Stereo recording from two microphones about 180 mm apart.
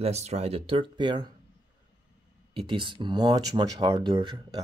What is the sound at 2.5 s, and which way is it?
Speech, 30° right (ahead or behind).